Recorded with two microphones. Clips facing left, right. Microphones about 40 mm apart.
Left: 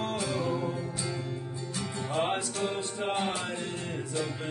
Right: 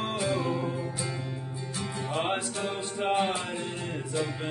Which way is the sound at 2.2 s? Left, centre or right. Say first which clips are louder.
Left 1 dB; right.